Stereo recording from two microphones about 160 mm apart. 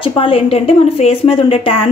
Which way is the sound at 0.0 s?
35° left (ahead or behind).